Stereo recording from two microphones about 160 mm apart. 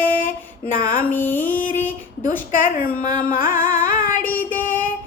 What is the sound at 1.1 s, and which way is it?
Music, 10° left (ahead or behind).